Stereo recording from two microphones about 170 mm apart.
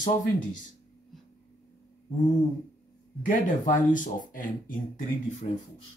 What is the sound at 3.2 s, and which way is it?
Speech, 50° left (ahead or behind).